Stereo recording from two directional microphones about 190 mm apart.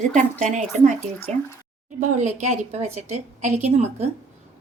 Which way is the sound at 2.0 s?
40° right (ahead or behind).